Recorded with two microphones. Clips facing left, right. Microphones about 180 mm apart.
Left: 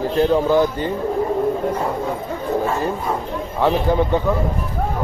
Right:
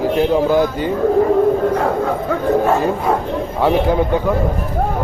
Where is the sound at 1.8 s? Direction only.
70° right (ahead or behind).